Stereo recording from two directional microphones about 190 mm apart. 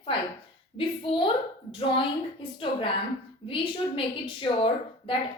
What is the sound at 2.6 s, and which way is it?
A woman's voice, 25° left (ahead or behind).